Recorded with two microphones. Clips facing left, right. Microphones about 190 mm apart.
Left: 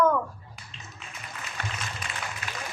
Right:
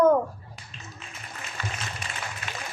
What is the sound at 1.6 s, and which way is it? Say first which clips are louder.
Music: right 1 dB; 60° left (ahead or behind).